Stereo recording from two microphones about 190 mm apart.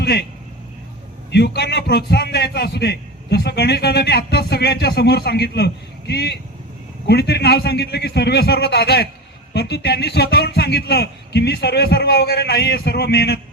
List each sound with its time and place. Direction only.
0.0 s speech: 60° left (ahead or behind)
1.3 s a man's voice: 60° left (ahead or behind)